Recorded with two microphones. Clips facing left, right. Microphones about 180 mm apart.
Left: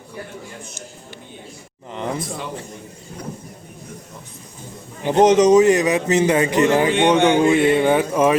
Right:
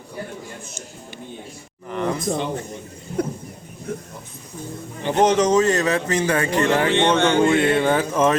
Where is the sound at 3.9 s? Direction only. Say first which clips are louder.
Right 10 dB; 60° right (ahead or behind).